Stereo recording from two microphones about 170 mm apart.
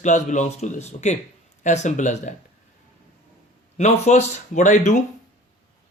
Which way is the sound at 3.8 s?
40° left (ahead or behind).